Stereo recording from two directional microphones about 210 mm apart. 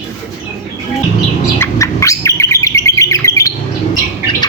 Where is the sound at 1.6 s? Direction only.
15° left (ahead or behind).